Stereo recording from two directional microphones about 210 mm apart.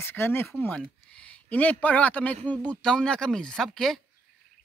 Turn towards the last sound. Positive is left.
turn(degrees=0)  # may be behind; listen again after turning